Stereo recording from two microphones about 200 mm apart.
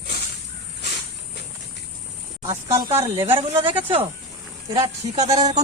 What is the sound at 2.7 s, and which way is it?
Speech, 15° right (ahead or behind).